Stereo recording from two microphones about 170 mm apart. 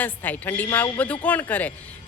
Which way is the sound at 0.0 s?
10° left (ahead or behind).